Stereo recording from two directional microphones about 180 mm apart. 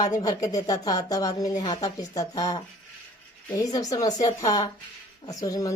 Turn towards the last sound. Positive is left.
turn(degrees=20)  # may be behind; listen again after turning